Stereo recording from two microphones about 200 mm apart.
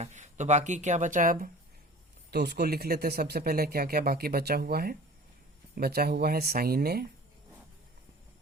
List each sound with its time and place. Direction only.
0.0 s speech: 35° right (ahead or behind)
2.3 s speech: 55° right (ahead or behind)